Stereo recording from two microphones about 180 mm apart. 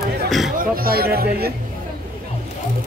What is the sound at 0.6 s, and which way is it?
Speech, 55° right (ahead or behind).